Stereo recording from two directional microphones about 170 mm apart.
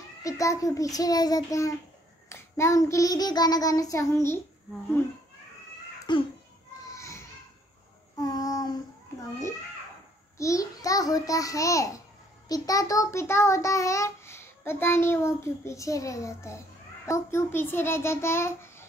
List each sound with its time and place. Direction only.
0.2 s child singing: 20° left (ahead or behind)
6.1 s child singing: 25° left (ahead or behind)
6.9 s children playing: 15° left (ahead or behind)
8.2 s child singing: 20° left (ahead or behind)
10.3 s child singing: 20° left (ahead or behind)
12.4 s a child's voice: 20° left (ahead or behind)